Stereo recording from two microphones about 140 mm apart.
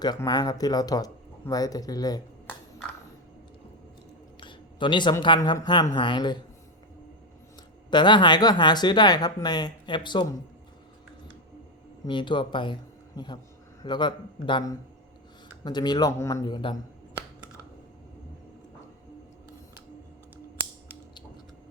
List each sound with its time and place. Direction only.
0.3 s speech: 30° left (ahead or behind)
2.5 s a sound: 10° left (ahead or behind)
4.4 s a sound: 35° left (ahead or behind)
5.4 s speech: 25° left (ahead or behind)
7.9 s speech: 35° left (ahead or behind)
12.0 s speech: 35° left (ahead or behind)
15.6 s speech: 30° left (ahead or behind)